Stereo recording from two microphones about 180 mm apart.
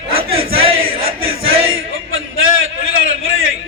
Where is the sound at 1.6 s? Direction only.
90° right.